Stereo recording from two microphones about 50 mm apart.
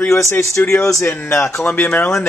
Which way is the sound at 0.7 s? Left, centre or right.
Left.